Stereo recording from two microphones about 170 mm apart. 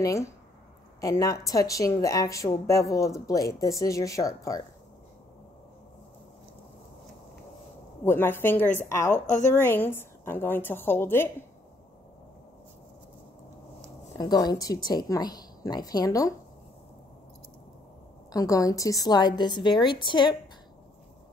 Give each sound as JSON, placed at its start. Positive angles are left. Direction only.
{"t": 0.0, "sound": "a woman's voice", "side_deg": 20}
{"t": 8.0, "sound": "a woman's voice", "side_deg": 15}
{"t": 9.2, "sound": "a woman's voice", "side_deg": 50}
{"t": 9.5, "sound": "a woman's voice", "side_deg": 15}
{"t": 14.1, "sound": "a woman's voice", "side_deg": 20}
{"t": 18.3, "sound": "a woman's voice", "side_deg": 20}